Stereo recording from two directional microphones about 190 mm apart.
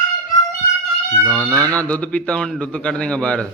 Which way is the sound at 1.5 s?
15° right (ahead or behind).